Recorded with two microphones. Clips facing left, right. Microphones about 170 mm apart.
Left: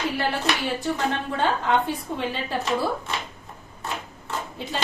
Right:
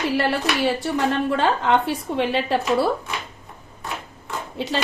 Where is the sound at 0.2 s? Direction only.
80° right.